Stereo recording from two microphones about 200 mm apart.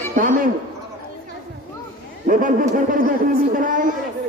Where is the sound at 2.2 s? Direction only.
40° right (ahead or behind).